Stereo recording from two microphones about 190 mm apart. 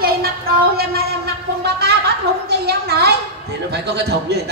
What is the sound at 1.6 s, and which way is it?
A man's voice, 60° right (ahead or behind).